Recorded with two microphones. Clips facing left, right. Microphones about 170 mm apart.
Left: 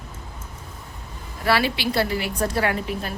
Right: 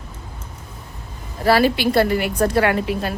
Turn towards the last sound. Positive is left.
turn(degrees=-75)  # may be behind; listen again after turning